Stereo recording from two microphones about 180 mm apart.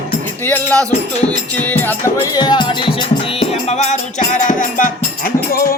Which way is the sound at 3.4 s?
35° left (ahead or behind).